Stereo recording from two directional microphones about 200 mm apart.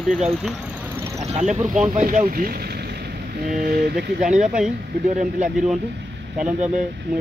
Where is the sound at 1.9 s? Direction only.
40° right (ahead or behind).